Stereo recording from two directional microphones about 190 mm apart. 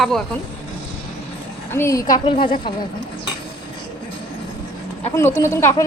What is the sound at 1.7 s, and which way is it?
Speech, 15° left (ahead or behind).